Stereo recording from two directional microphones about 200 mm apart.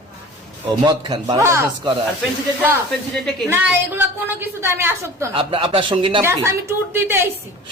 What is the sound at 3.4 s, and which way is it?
A woman's voice, 10° right (ahead or behind).